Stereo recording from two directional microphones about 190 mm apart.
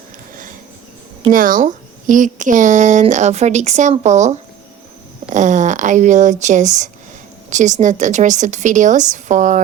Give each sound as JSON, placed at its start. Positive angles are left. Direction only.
{"t": 1.3, "sound": "speech", "side_deg": -45}